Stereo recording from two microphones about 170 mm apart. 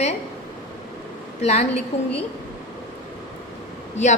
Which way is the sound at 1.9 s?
40° left (ahead or behind).